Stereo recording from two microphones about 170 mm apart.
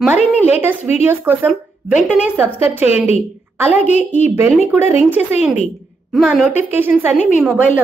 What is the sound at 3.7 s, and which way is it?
Speech, 45° left (ahead or behind).